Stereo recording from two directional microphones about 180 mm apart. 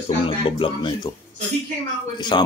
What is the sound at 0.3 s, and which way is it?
Speech, 30° left (ahead or behind).